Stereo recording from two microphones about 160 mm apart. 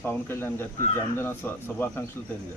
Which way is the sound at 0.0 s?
10° left (ahead or behind).